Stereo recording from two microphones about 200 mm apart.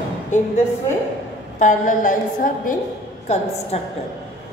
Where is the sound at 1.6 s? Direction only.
40° left (ahead or behind).